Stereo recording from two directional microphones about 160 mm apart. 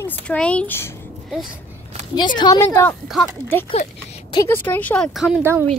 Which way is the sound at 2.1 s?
25° left (ahead or behind).